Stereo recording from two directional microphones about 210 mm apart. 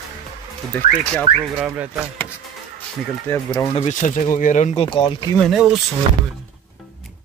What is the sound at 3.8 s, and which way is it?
Speech, 35° left (ahead or behind).